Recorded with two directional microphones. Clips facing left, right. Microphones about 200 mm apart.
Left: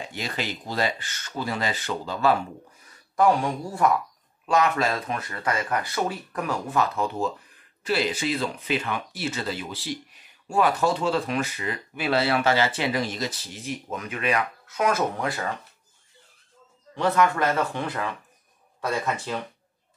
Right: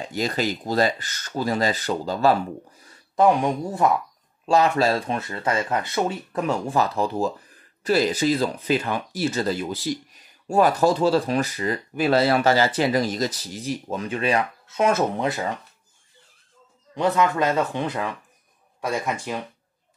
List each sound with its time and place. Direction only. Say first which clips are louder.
0.1 s speech: right 9 dB; 40° right (ahead or behind)
2.8 s a sound: right 2 dB; 30° right (ahead or behind)
3.3 s speech: right 3 dB; 20° right (ahead or behind)
4.5 s speech: right 4 dB; 30° right (ahead or behind)
16.9 s speech: right 1 dB; 20° right (ahead or behind)